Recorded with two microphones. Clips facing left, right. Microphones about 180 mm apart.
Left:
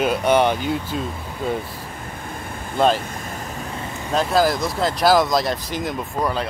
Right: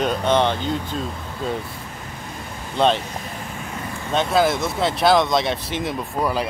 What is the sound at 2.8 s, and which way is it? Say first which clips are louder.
Speech: left 1 dB; centre (ahead or behind).